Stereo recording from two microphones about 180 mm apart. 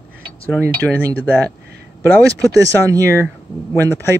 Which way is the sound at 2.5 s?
20° right (ahead or behind).